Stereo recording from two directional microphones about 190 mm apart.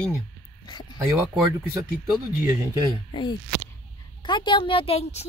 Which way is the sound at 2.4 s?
15° right (ahead or behind).